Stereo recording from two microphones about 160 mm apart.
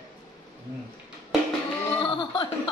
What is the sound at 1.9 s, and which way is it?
Speech, 30° left (ahead or behind).